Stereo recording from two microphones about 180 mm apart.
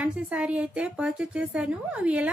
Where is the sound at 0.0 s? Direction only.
5° right (ahead or behind).